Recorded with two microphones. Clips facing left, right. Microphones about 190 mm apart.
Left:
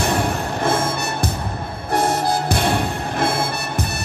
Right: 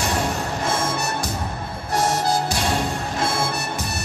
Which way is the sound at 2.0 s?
60° left (ahead or behind).